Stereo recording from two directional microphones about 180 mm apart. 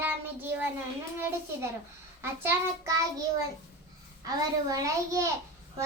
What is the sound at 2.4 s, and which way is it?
Speech, 10° right (ahead or behind).